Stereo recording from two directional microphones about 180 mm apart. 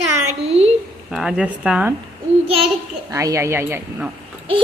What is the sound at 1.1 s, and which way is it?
Speech, centre (ahead or behind).